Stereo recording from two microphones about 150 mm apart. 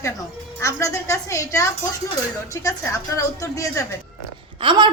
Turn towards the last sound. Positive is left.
turn(degrees=-30)  # may be behind; listen again after turning